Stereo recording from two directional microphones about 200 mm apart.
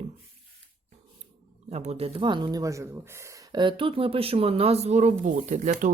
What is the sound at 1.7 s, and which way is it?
Speech, 30° right (ahead or behind).